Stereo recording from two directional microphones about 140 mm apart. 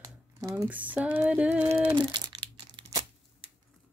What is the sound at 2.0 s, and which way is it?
Crumpling, 35° right (ahead or behind).